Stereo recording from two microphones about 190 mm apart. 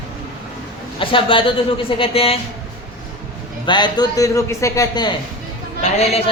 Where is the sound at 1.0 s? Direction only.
25° left (ahead or behind).